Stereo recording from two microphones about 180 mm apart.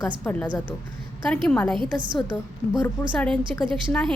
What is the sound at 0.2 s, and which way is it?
A woman's voice, 5° left (ahead or behind).